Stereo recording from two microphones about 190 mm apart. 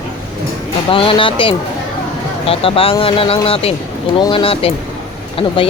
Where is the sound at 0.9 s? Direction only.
25° left (ahead or behind).